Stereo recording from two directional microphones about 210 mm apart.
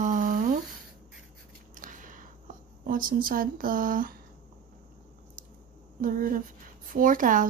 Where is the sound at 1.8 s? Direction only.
40° right (ahead or behind).